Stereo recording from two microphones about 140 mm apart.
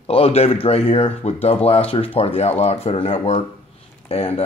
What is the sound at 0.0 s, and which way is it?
Speech, 45° left (ahead or behind).